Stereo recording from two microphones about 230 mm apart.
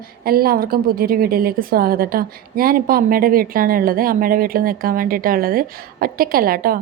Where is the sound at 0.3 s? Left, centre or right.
Right.